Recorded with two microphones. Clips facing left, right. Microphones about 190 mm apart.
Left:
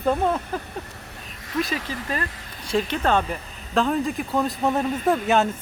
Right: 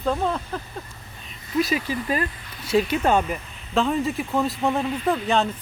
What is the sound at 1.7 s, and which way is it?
Speech, 10° right (ahead or behind).